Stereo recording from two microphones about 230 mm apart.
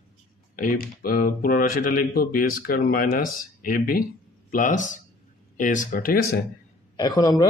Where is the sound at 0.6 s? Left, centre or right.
Left.